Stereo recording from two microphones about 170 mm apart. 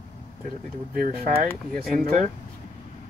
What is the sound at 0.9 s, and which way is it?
Speech, 50° right (ahead or behind).